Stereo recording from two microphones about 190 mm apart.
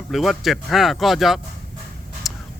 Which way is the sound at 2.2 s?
Centre (ahead or behind).